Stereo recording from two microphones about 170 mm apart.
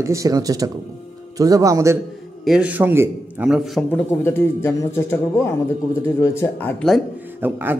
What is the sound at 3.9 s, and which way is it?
Speech, 15° left (ahead or behind).